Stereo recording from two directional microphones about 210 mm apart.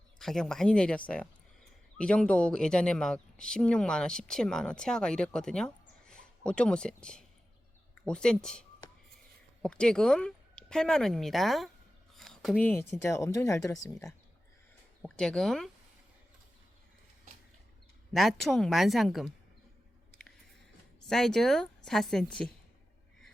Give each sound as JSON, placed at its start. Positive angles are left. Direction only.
{"t": 0.2, "sound": "speech", "side_deg": 0}
{"t": 15.0, "sound": "speech", "side_deg": 5}
{"t": 18.1, "sound": "speech", "side_deg": 0}
{"t": 21.0, "sound": "speech", "side_deg": 0}